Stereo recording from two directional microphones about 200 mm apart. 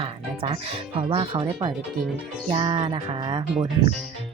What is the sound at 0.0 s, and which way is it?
Speech, 30° right (ahead or behind).